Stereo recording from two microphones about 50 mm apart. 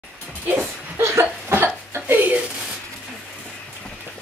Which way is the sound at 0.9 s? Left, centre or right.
Right.